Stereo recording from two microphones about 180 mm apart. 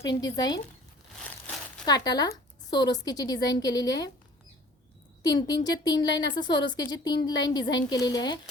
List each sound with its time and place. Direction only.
0.0 s a woman's voice: 20° left (ahead or behind)
1.8 s a woman's voice: 20° left (ahead or behind)
5.2 s a woman's voice: 25° left (ahead or behind)